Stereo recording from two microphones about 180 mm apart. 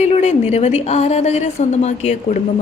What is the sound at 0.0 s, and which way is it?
A woman's voice, 35° left (ahead or behind).